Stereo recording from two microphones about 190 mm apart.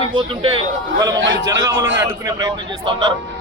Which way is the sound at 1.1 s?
80° right.